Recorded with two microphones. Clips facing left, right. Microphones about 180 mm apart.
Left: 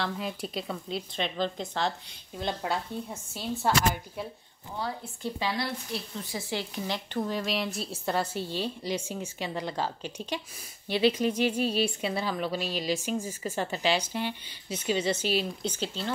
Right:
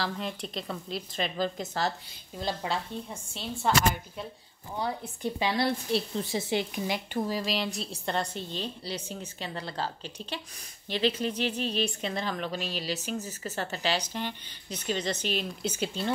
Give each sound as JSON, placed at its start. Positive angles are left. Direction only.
{"t": 0.0, "sound": "a woman's voice", "side_deg": 5}
{"t": 4.7, "sound": "a woman's voice", "side_deg": -15}
{"t": 5.6, "sound": "a woman's voice", "side_deg": -30}
{"t": 7.2, "sound": "speech", "side_deg": 0}
{"t": 15.6, "sound": "a woman's voice", "side_deg": -10}